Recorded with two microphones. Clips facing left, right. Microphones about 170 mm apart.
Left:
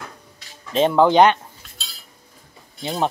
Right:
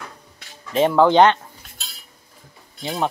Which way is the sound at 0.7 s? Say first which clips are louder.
Even; 20° left (ahead or behind).